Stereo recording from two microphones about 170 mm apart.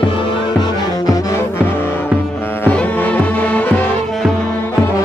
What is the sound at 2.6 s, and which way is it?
Music, 10° left (ahead or behind).